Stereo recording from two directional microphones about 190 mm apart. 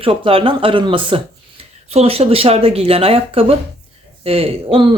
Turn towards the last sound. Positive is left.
turn(degrees=-25)  # may be behind; listen again after turning